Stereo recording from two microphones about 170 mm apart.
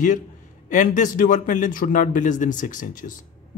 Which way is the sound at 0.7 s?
45° left (ahead or behind).